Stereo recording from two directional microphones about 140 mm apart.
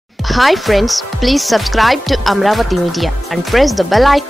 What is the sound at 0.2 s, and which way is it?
Speech, centre (ahead or behind).